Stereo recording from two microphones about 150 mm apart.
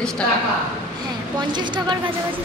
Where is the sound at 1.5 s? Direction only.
30° right (ahead or behind).